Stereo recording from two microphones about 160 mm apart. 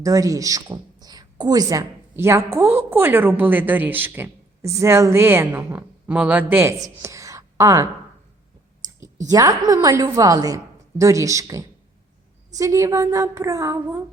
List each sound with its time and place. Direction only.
0.0 s a woman's voice: 20° right (ahead or behind)
8.8 s clicking: 25° right (ahead or behind)
9.3 s a woman's voice: 20° right (ahead or behind)